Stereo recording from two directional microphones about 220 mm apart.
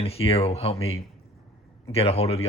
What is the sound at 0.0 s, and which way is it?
Speech, 25° left (ahead or behind).